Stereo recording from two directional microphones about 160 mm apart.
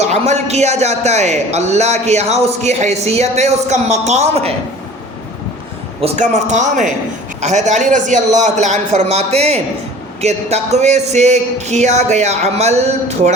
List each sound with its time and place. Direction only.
0.0 s a man's voice: 45° right (ahead or behind)
6.0 s a man's voice: 50° right (ahead or behind)